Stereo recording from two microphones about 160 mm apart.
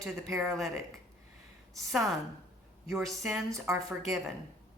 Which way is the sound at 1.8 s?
Centre (ahead or behind).